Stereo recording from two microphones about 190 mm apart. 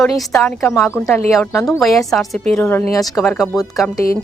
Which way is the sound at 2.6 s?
10° left (ahead or behind).